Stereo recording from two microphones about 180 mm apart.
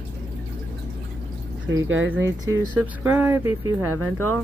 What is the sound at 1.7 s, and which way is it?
Speech, 90° right.